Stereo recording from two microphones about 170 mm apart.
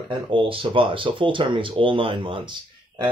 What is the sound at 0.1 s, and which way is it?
Speech, 30° right (ahead or behind).